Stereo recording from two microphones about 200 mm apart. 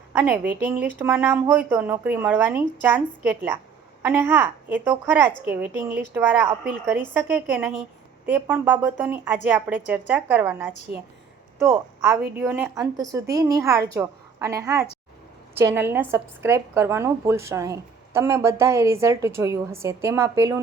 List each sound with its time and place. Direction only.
0.1 s a woman's voice: 10° right (ahead or behind)